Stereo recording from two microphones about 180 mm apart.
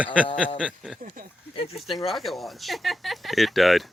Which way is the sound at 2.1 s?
Centre (ahead or behind).